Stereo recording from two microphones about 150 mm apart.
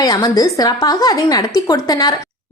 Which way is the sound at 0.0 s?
25° left (ahead or behind).